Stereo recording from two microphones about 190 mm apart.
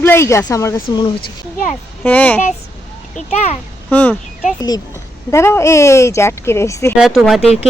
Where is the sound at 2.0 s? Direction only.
10° left (ahead or behind).